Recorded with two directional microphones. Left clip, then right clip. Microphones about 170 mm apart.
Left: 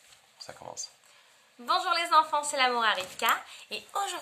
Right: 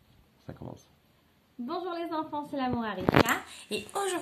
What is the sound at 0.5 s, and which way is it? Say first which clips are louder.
A woman's voice: left 4 dB; 15° left (ahead or behind).